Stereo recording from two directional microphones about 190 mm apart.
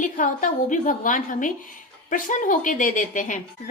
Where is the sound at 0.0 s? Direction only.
40° left (ahead or behind).